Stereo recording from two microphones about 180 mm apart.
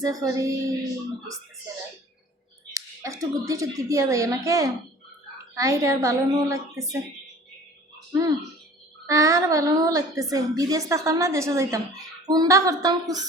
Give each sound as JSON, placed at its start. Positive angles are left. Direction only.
{"t": 0.0, "sound": "speech", "side_deg": -20}
{"t": 2.7, "sound": "speech", "side_deg": -15}
{"t": 9.0, "sound": "a woman's voice", "side_deg": -20}